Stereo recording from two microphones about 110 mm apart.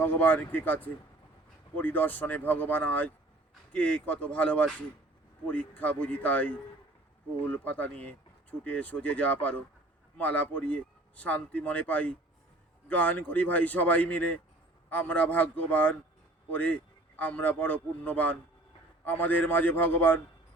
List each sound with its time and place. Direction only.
0.0 s speech: 15° left (ahead or behind)